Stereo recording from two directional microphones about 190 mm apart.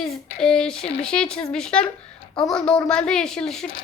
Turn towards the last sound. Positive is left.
turn(degrees=5)  # may be behind; listen again after turning